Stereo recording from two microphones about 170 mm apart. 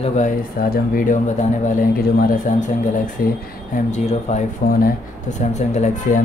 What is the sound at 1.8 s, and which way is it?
Speech, 55° left (ahead or behind).